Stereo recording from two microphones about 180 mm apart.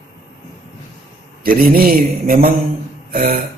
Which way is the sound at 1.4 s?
55° right (ahead or behind).